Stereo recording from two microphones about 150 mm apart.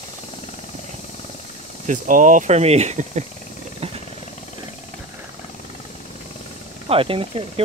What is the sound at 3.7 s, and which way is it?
Wild animals, 40° right (ahead or behind).